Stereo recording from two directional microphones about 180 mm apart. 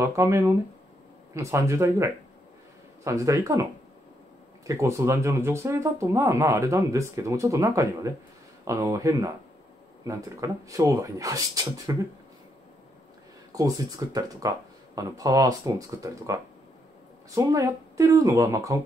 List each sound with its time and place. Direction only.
0.0 s speech: 15° right (ahead or behind)
4.6 s speech: 15° right (ahead or behind)
13.5 s speech: 20° right (ahead or behind)